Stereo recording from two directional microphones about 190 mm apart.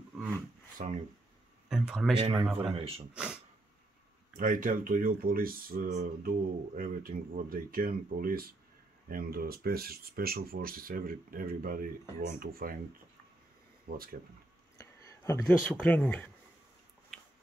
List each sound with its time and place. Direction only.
0.8 s speech: 40° right (ahead or behind)
1.7 s a sound: 5° right (ahead or behind)
2.4 s speech: 5° right (ahead or behind)
2.7 s speech: 30° right (ahead or behind)
4.4 s speech: 45° right (ahead or behind)
13.8 s speech: 50° right (ahead or behind)
14.8 s a sound: 15° left (ahead or behind)
15.4 s speech: 5° left (ahead or behind)